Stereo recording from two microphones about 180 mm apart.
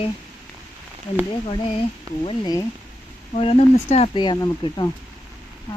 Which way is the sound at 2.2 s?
20° left (ahead or behind).